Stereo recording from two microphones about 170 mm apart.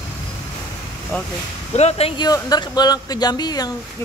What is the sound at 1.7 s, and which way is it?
Speech, 40° left (ahead or behind).